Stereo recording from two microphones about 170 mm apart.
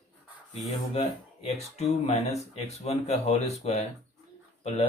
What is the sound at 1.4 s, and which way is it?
Speech, 40° left (ahead or behind).